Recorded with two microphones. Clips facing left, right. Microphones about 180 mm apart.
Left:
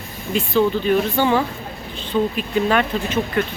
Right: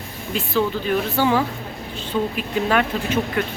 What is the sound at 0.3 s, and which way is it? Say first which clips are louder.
Speech: left 4 dB; centre (ahead or behind).